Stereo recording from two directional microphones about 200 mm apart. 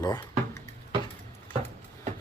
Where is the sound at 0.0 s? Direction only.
20° left (ahead or behind).